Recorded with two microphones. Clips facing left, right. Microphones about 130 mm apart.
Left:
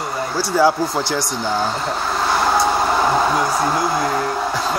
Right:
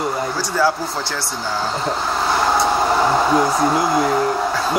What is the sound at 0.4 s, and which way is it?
Speech, 15° left (ahead or behind).